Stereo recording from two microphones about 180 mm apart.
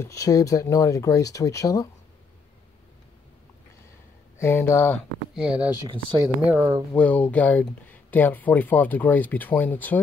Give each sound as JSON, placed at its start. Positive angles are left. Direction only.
{"t": 0.0, "sound": "speech", "side_deg": 20}
{"t": 4.4, "sound": "speech", "side_deg": 15}
{"t": 5.3, "sound": "speech", "side_deg": -5}
{"t": 6.9, "sound": "speech", "side_deg": 10}